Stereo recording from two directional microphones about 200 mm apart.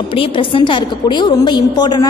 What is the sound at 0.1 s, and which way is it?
A woman's voice, 25° left (ahead or behind).